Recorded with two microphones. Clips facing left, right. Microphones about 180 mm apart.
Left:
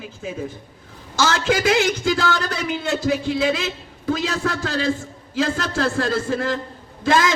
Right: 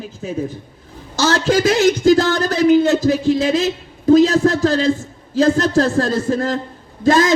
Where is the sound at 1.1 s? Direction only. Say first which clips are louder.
Right 4 dB; 40° right (ahead or behind).